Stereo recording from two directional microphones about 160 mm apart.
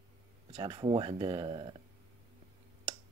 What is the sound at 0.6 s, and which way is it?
Speech, 30° right (ahead or behind).